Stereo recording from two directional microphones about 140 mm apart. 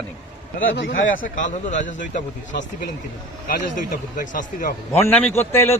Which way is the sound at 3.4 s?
65° left (ahead or behind).